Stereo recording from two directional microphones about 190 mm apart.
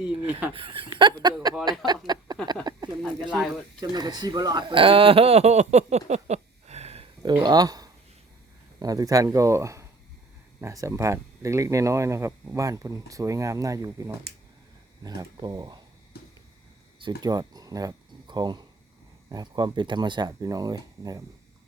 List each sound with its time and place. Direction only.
0.5 s speech: 25° right (ahead or behind)
2.7 s a sound: 20° right (ahead or behind)
3.0 s speech: centre (ahead or behind)
3.8 s speech: 20° right (ahead or behind)
7.4 s speech: 20° right (ahead or behind)
16.1 s a sound: 55° left (ahead or behind)
17.0 s speech: 25° right (ahead or behind)